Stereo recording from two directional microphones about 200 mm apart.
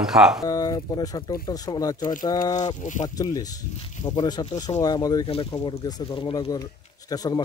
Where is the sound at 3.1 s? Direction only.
20° left (ahead or behind).